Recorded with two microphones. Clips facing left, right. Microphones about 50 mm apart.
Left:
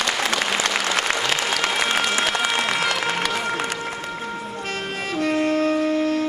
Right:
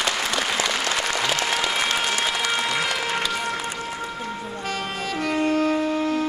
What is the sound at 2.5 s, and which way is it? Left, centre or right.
Applause, left.